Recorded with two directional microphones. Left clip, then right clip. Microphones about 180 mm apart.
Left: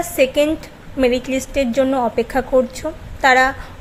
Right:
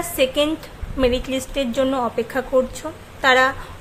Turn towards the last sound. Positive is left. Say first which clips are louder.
# left 2 dB
turn(degrees=20)  # may be behind; listen again after turning